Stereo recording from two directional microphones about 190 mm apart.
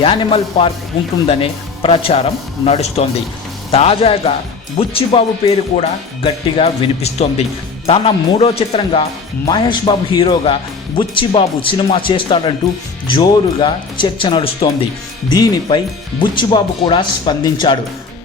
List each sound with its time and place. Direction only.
0.0 s speech: 25° left (ahead or behind)